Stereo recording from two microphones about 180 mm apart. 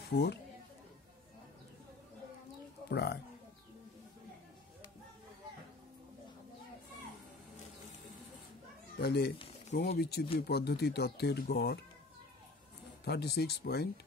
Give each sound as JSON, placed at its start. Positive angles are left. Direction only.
{"t": 2.9, "sound": "speech", "side_deg": 70}
{"t": 8.9, "sound": "speech", "side_deg": 65}
{"t": 13.0, "sound": "speech", "side_deg": 65}